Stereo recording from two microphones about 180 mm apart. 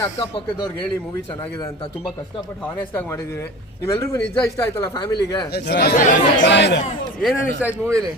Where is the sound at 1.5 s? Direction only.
25° left (ahead or behind).